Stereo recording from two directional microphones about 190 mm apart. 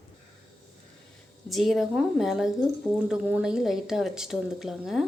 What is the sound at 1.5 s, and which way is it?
A woman's voice, centre (ahead or behind).